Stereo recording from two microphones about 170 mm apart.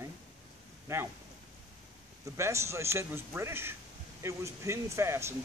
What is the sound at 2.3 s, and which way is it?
Speech, 15° right (ahead or behind).